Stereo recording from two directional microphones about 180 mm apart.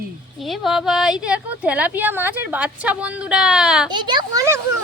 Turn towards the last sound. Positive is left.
turn(degrees=-15)  # may be behind; listen again after turning